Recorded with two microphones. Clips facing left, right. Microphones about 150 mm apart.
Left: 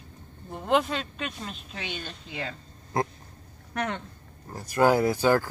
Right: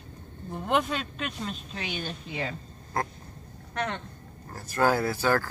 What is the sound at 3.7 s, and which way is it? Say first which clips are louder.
Speech: left 1 dB; 5° left (ahead or behind).